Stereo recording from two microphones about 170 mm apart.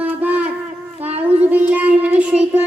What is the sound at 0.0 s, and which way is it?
Shofar, 10° right (ahead or behind).